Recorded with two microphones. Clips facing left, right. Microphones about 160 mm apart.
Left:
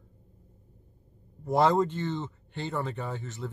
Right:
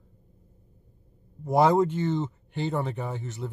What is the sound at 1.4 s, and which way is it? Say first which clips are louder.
Speech: right 3 dB; 15° right (ahead or behind).